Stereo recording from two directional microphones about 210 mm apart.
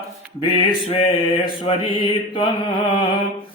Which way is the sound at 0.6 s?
25° left (ahead or behind).